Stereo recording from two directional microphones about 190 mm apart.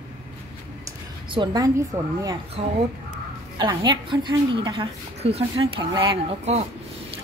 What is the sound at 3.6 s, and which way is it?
A woman's voice, 20° right (ahead or behind).